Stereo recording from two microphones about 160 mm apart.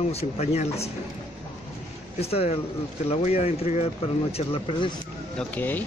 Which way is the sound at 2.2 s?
40° left (ahead or behind).